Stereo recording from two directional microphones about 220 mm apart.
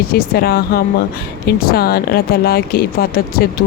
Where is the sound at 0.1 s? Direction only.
45° left (ahead or behind).